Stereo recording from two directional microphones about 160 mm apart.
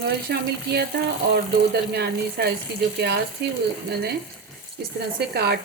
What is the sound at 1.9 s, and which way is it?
Speech, 85° right.